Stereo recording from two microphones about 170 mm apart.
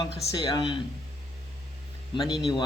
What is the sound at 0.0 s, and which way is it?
Speech, 25° left (ahead or behind).